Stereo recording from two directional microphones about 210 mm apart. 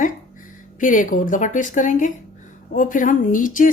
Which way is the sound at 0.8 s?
40° left (ahead or behind).